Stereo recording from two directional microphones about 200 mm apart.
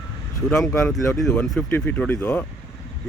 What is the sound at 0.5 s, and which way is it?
Speech, 5° left (ahead or behind).